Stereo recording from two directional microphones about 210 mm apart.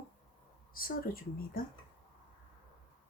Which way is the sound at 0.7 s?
45° left (ahead or behind).